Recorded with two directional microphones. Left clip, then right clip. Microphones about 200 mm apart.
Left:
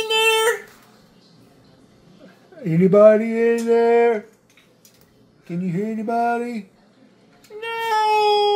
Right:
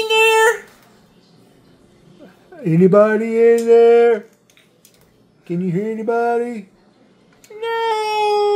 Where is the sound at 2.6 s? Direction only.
40° right (ahead or behind).